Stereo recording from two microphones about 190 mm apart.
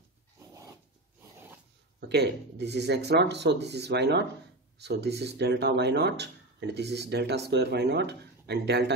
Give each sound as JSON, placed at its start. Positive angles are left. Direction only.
{"t": 2.0, "sound": "speech", "side_deg": -65}